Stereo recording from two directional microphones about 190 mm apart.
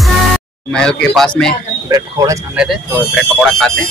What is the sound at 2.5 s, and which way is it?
Speech, 5° right (ahead or behind).